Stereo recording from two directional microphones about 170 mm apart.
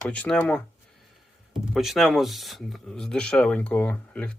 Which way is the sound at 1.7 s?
Centre (ahead or behind).